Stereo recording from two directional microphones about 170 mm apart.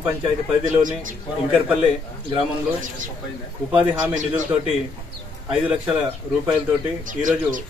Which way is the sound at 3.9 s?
45° right (ahead or behind).